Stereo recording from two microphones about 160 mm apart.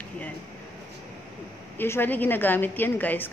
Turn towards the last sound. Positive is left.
turn(degrees=10)  # may be behind; listen again after turning